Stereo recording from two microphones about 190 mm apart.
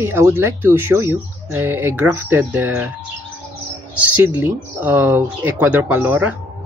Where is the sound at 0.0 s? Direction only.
10° right (ahead or behind).